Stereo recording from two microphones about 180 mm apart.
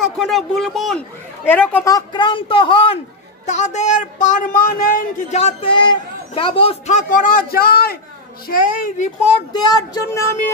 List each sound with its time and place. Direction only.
0.2 s a woman's voice: centre (ahead or behind)
1.9 s speech: 25° left (ahead or behind)
3.4 s speech: 40° left (ahead or behind)
8.5 s a child's voice: 45° left (ahead or behind)
9.5 s speech: 25° left (ahead or behind)